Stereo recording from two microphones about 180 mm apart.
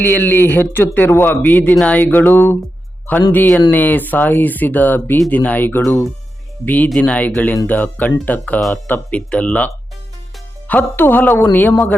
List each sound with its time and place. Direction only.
0.0 s speech: 10° left (ahead or behind)